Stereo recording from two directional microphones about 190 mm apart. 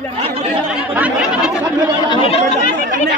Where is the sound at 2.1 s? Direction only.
30° left (ahead or behind).